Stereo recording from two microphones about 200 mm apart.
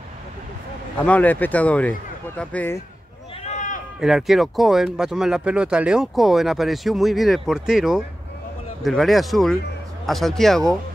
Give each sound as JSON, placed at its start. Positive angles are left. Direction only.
{"t": 1.0, "sound": "speech", "side_deg": 10}
{"t": 3.4, "sound": "run", "side_deg": 40}
{"t": 4.0, "sound": "speech", "side_deg": 0}